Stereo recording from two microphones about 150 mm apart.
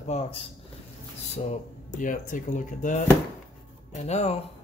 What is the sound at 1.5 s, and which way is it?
Speech, 60° left (ahead or behind).